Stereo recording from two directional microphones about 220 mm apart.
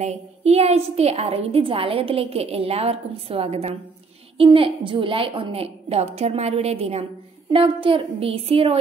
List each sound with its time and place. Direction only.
0.0 s a woman's voice: 30° right (ahead or behind)